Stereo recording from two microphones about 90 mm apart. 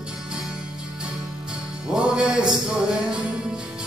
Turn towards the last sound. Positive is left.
turn(degrees=-10)  # may be behind; listen again after turning